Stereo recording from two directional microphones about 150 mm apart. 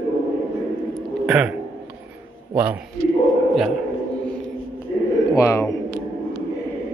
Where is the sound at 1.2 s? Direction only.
10° right (ahead or behind).